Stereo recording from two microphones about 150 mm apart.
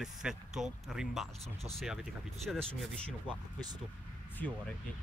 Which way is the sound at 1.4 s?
45° right (ahead or behind).